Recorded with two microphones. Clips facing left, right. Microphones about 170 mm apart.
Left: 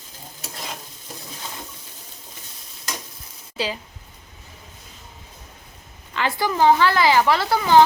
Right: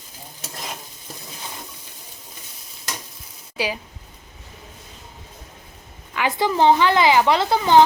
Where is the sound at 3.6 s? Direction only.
15° right (ahead or behind).